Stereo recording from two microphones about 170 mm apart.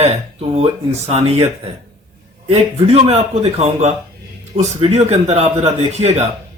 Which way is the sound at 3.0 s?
40° right (ahead or behind).